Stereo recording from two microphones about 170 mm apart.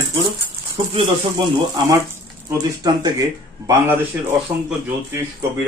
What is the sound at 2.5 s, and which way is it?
Speech, 20° right (ahead or behind).